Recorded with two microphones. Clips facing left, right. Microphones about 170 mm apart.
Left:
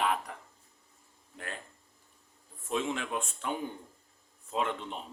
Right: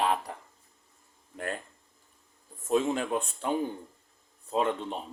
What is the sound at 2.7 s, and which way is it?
Speech, 40° right (ahead or behind).